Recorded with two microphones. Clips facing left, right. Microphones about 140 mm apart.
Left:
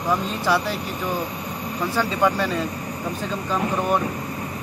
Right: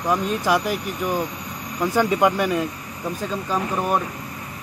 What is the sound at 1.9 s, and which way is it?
Speech, 15° right (ahead or behind).